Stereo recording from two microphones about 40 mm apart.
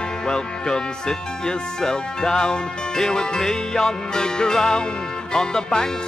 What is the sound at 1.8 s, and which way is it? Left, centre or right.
Music, centre.